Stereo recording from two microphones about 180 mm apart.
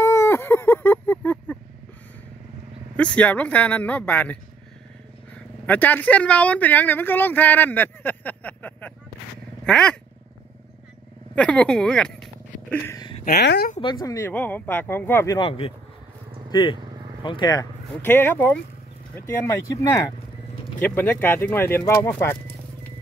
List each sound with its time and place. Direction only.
0.0 s a sound: 15° left (ahead or behind)
3.0 s speech: 5° left (ahead or behind)
5.7 s speech: 10° left (ahead or behind)
9.7 s a sound: 5° left (ahead or behind)
11.3 s speech: 5° left (ahead or behind)
13.2 s speech: 60° left (ahead or behind)
13.7 s speech: 20° left (ahead or behind)
15.3 s speech: 30° left (ahead or behind)
16.4 s vehicle: 25° left (ahead or behind)
17.2 s speech: 25° left (ahead or behind)
18.0 s speech: 10° left (ahead or behind)